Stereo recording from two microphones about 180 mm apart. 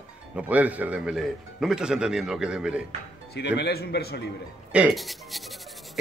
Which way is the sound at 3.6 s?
65° left (ahead or behind).